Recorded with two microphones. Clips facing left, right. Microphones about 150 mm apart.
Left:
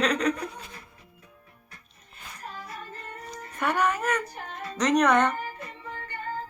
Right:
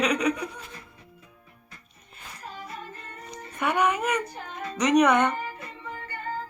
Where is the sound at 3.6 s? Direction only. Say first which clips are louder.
Right 1 dB; 15° right (ahead or behind).